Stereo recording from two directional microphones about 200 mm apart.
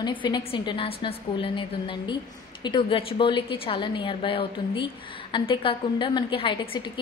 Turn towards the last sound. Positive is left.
turn(degrees=25)  # may be behind; listen again after turning